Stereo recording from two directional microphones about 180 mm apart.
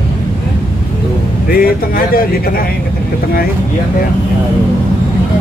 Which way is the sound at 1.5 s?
55° left (ahead or behind).